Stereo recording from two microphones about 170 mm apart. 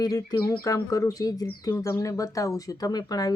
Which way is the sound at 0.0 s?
20° left (ahead or behind).